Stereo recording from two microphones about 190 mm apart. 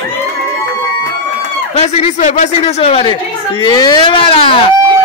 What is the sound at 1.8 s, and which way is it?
Speech, 35° left (ahead or behind).